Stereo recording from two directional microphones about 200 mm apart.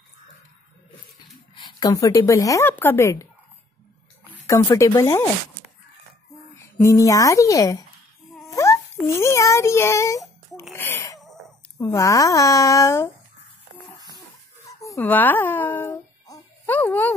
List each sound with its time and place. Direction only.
1.5 s a woman's voice: 25° left (ahead or behind)
4.5 s a woman's voice: 15° left (ahead or behind)
6.5 s a child's voice: 15° left (ahead or behind)
10.7 s wheeze: 10° left (ahead or behind)
11.8 s a woman's voice: 15° left (ahead or behind)
14.1 s a sound: 15° left (ahead or behind)